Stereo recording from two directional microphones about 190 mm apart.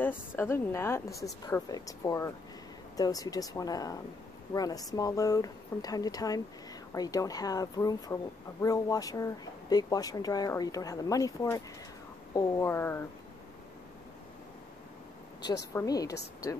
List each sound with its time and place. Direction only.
0.0 s a woman's voice: 10° left (ahead or behind)
15.7 s a woman's voice: 20° left (ahead or behind)